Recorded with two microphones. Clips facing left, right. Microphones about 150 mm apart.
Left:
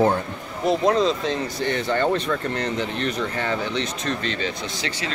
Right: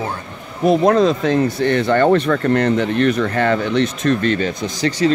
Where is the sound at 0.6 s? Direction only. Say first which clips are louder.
Right 6 dB; 55° right (ahead or behind).